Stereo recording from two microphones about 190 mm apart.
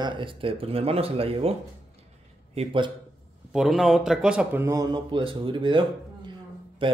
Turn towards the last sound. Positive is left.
turn(degrees=-25)  # may be behind; listen again after turning